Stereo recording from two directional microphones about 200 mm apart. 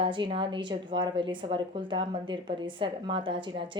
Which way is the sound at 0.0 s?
25° right (ahead or behind).